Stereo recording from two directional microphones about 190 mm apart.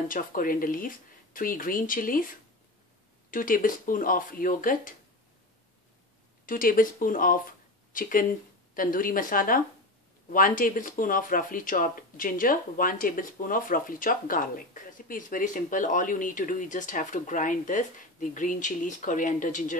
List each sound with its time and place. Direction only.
0.1 s speech: 45° left (ahead or behind)
3.3 s speech: 45° left (ahead or behind)
6.4 s speech: 45° left (ahead or behind)